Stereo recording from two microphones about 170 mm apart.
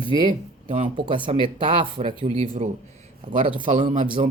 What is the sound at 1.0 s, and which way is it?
Speech, 30° right (ahead or behind).